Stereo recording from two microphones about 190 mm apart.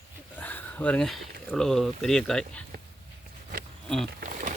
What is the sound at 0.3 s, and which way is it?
Speech, 10° left (ahead or behind).